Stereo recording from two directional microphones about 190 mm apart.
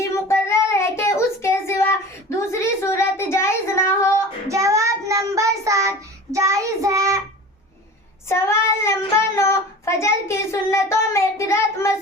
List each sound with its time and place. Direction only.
0.0 s child singing: 15° left (ahead or behind)
2.4 s a sound: 15° left (ahead or behind)
4.4 s child singing: 15° right (ahead or behind)
8.3 s child singing: 15° left (ahead or behind)